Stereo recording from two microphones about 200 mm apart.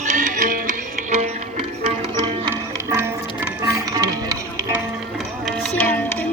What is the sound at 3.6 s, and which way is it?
Music, 15° right (ahead or behind).